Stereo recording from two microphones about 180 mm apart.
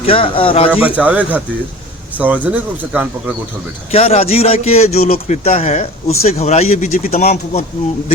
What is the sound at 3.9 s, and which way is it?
A man's voice, 35° left (ahead or behind).